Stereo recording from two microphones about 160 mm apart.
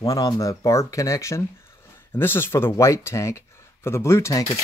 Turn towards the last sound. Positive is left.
turn(degrees=15)  # may be behind; listen again after turning